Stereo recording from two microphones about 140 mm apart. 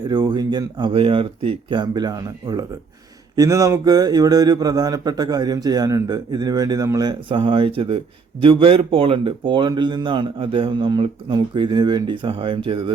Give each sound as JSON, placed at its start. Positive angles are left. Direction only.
{"t": 0.1, "sound": "speech", "side_deg": -30}